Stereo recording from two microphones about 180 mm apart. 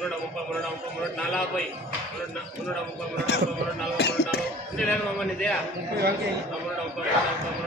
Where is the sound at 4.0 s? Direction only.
65° left (ahead or behind).